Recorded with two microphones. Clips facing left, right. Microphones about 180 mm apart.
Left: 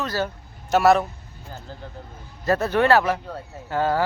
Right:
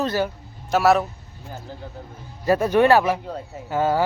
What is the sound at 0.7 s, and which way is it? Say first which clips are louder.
Speech: left 1 dB; centre (ahead or behind).